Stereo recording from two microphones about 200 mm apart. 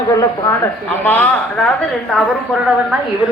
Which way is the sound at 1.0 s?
10° left (ahead or behind).